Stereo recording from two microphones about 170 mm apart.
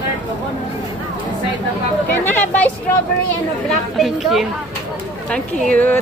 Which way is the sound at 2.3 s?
10° left (ahead or behind).